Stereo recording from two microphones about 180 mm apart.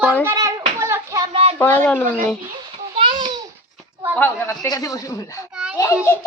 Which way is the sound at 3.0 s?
25° right (ahead or behind).